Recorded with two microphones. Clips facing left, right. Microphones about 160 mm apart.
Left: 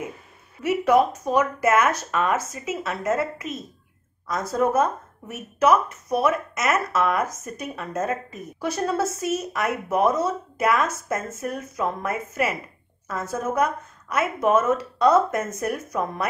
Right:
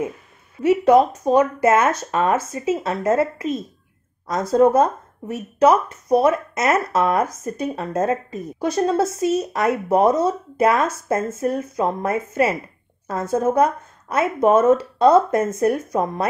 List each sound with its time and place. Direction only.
0.6 s speech: 25° right (ahead or behind)